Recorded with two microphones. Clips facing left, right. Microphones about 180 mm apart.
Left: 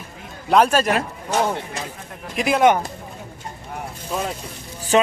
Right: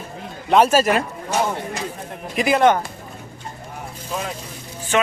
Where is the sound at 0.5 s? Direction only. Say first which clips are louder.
Right 1 dB; 5° right (ahead or behind).